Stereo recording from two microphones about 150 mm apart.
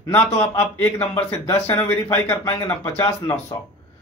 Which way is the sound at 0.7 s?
10° left (ahead or behind).